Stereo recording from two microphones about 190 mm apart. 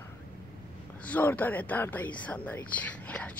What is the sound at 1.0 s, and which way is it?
Speech, 10° left (ahead or behind).